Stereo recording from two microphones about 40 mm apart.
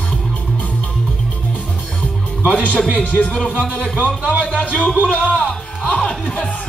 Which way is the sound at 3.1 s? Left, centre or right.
Left.